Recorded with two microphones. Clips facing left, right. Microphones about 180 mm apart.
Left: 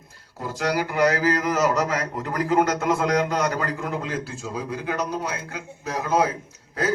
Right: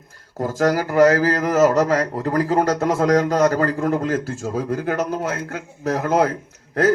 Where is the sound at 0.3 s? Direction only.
45° right (ahead or behind).